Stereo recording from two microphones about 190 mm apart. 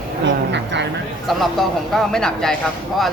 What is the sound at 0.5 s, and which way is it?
Vehicle, 65° right (ahead or behind).